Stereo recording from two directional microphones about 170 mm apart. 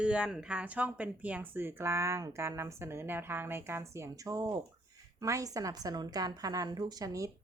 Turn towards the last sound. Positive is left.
turn(degrees=-20)  # may be behind; listen again after turning